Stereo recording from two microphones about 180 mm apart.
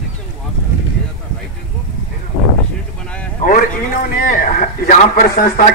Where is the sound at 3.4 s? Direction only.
50° left (ahead or behind).